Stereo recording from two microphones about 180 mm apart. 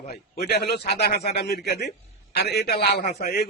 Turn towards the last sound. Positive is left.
turn(degrees=60)  # may be behind; listen again after turning